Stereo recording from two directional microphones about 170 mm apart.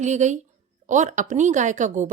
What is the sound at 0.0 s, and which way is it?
A woman's voice, 45° right (ahead or behind).